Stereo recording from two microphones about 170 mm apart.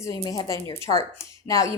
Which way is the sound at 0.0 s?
20° left (ahead or behind).